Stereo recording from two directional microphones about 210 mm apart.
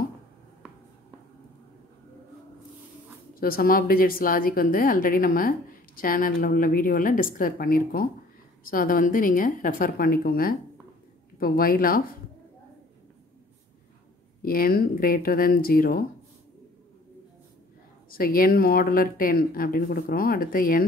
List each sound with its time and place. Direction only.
3.3 s a woman's voice: 45° left (ahead or behind)
14.4 s speech: 45° left (ahead or behind)
18.1 s speech: 45° left (ahead or behind)